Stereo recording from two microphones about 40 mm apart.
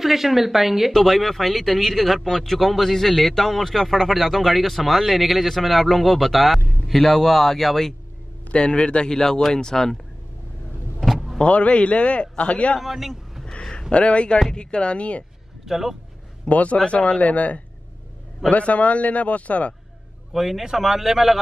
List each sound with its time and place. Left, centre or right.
0.0 s speech: centre
8.5 s speech: left
11.0 s vehicle: centre
11.3 s a man's voice: left
12.8 s a man's voice: centre
13.7 s a sound: centre
13.9 s speech: left
15.6 s speech: centre
16.4 s a man's voice: left
20.3 s speech: centre